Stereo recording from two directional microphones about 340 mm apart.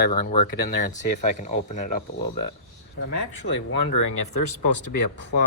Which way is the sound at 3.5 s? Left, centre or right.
Left.